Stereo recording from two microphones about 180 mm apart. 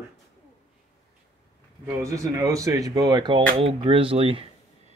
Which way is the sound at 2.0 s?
20° right (ahead or behind).